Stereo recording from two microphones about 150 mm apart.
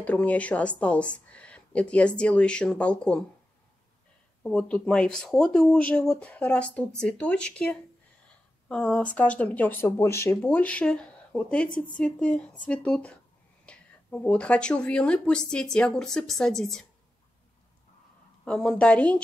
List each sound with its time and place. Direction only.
0.0 s speech: 10° left (ahead or behind)
4.4 s speech: 5° left (ahead or behind)
18.4 s speech: 5° left (ahead or behind)